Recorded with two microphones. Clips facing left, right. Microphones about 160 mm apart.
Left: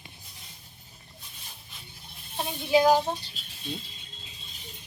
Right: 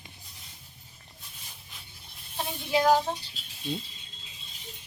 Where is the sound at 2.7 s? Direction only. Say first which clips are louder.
Left 2 dB; 10° left (ahead or behind).